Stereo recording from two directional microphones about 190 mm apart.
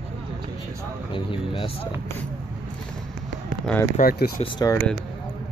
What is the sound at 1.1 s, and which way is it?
Speech, 25° left (ahead or behind).